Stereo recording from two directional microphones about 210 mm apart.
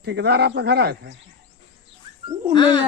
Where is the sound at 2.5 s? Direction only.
20° left (ahead or behind).